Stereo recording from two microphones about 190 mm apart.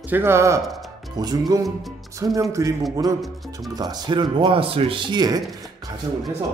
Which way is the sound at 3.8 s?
20° right (ahead or behind).